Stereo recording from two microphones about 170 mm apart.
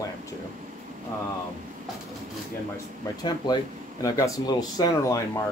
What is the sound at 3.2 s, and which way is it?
Speech, 25° left (ahead or behind).